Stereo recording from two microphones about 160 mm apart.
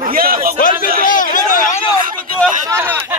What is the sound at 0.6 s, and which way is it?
Speech, 55° left (ahead or behind).